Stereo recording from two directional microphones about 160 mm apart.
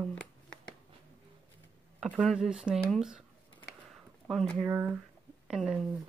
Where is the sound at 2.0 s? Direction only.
5° right (ahead or behind).